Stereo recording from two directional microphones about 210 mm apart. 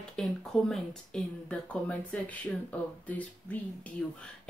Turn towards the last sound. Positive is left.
turn(degrees=5)  # may be behind; listen again after turning